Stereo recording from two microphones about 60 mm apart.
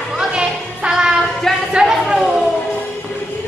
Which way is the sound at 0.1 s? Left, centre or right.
Centre.